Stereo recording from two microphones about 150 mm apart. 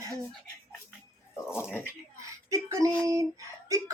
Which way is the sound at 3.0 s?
20° right (ahead or behind).